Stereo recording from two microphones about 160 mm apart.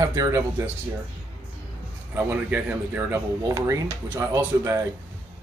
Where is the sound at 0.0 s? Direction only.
20° right (ahead or behind).